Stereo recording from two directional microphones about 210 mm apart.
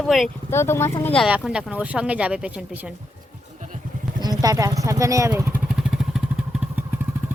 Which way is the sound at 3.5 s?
35° right (ahead or behind).